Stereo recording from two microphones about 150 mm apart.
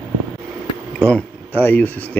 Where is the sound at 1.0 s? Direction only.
10° left (ahead or behind).